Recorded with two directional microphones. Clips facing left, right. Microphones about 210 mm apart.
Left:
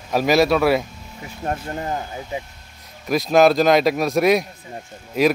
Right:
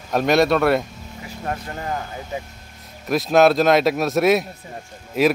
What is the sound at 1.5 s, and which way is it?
Speech, 30° left (ahead or behind).